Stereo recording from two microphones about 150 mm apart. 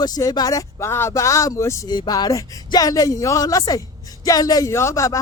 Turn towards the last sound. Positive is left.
turn(degrees=20)  # may be behind; listen again after turning